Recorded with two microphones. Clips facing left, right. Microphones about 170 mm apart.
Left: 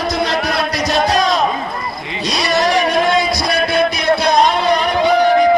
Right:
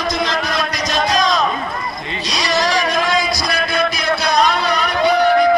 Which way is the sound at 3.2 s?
60° left (ahead or behind).